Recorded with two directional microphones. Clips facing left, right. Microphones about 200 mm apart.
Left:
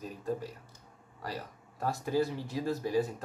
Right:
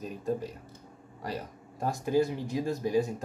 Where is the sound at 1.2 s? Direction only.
15° right (ahead or behind).